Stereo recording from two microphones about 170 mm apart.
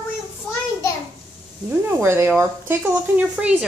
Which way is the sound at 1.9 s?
15° right (ahead or behind).